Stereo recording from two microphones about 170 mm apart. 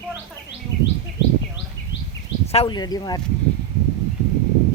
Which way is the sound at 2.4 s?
35° left (ahead or behind).